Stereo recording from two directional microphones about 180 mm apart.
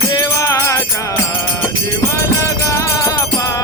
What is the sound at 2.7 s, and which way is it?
Music, 15° left (ahead or behind).